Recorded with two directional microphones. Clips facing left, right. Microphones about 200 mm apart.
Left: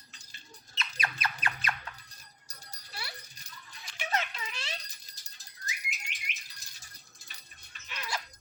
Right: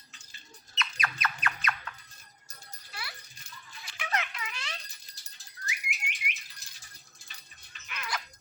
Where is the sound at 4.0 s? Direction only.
30° left (ahead or behind).